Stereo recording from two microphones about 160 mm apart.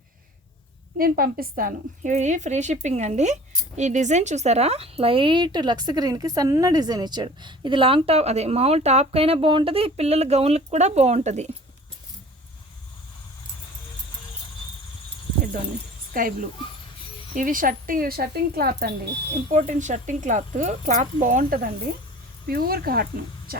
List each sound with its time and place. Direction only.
0.9 s a woman's voice: 65° right (ahead or behind); by 11.5 s 45° right (ahead or behind)
16.1 s speech: 60° right (ahead or behind)
17.3 s speech: 60° right (ahead or behind); by 18.9 s 75° right (ahead or behind)
19.5 s a woman's voice: 45° right (ahead or behind)
22.4 s speech: 70° right (ahead or behind)